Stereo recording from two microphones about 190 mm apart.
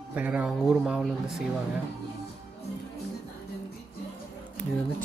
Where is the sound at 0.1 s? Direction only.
5° right (ahead or behind).